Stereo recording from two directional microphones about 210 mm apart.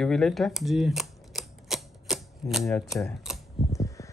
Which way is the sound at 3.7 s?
15° left (ahead or behind).